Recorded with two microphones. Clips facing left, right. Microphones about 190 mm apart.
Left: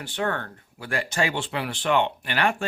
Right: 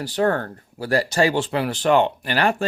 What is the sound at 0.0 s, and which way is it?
Speech, 40° right (ahead or behind).